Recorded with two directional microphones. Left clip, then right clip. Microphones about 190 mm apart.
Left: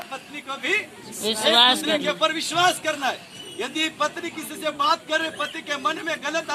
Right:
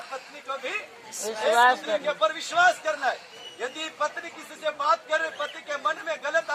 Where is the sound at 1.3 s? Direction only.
10° right (ahead or behind).